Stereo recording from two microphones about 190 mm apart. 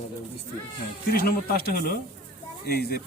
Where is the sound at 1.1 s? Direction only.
50° left (ahead or behind).